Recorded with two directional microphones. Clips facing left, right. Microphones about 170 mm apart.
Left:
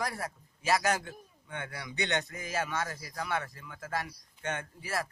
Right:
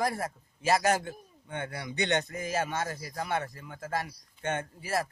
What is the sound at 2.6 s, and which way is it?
Speech, 25° right (ahead or behind).